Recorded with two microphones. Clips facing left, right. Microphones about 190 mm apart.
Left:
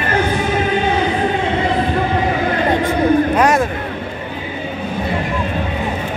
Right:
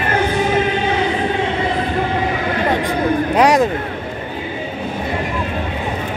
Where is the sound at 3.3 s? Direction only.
15° right (ahead or behind).